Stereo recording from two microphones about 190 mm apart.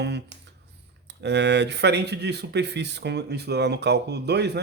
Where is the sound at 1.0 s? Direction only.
65° right (ahead or behind).